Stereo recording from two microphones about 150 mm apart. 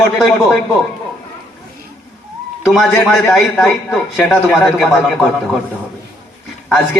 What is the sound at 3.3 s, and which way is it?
A man's voice, 5° left (ahead or behind).